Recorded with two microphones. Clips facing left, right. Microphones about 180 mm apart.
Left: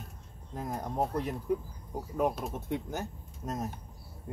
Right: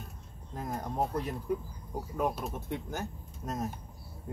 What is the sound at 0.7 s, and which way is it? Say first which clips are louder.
Speech: even; 10° left (ahead or behind).